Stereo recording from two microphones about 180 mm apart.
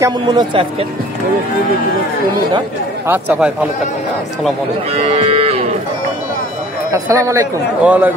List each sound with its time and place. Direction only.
0.0 s speech: 25° right (ahead or behind)
3.1 s speech: 5° right (ahead or behind)
5.0 s cattle: 35° right (ahead or behind)
6.9 s speech: 15° right (ahead or behind)